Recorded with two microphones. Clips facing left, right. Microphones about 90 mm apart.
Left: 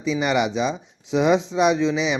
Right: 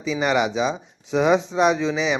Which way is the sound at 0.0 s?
Centre (ahead or behind).